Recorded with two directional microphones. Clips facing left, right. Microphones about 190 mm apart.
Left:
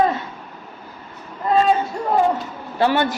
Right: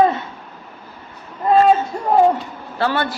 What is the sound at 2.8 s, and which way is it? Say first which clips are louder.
Speech: left 2 dB; 15° left (ahead or behind).